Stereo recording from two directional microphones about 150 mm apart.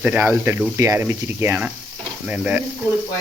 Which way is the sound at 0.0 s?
10° right (ahead or behind).